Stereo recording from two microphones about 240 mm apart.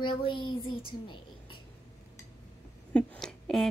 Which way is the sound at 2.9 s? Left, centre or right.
Centre.